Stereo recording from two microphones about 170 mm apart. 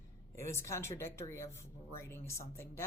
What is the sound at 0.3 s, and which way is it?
A woman's voice, 15° left (ahead or behind).